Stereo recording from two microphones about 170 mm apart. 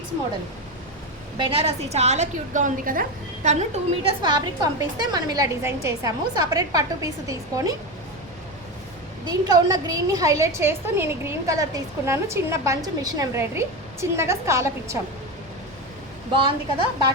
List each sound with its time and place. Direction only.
1.4 s a woman's voice: 35° right (ahead or behind); by 3.5 s 55° right (ahead or behind)
3.5 s a woman's voice: 40° right (ahead or behind)
4.2 s a woman's voice: 25° right (ahead or behind)
9.2 s a woman's voice: 20° right (ahead or behind)